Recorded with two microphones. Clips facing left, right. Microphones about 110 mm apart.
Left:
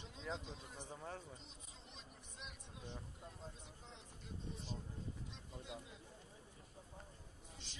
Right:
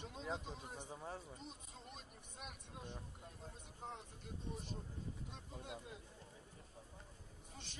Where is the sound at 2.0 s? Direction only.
50° right (ahead or behind).